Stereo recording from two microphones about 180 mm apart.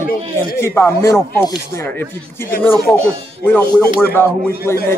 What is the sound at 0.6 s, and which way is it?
A man's voice, 15° left (ahead or behind).